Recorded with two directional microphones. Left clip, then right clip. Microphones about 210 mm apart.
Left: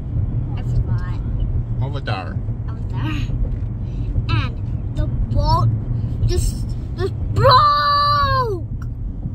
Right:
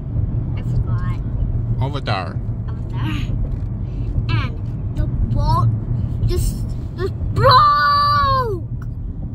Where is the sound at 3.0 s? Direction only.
10° left (ahead or behind).